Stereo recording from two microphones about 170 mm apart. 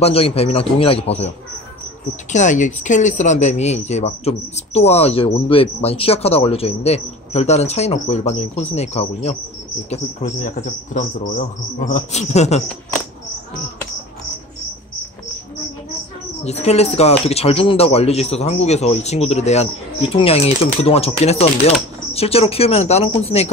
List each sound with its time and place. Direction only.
0.0 s speech: 35° left (ahead or behind)
2.3 s speech: 45° left (ahead or behind)
16.4 s speech: 40° left (ahead or behind)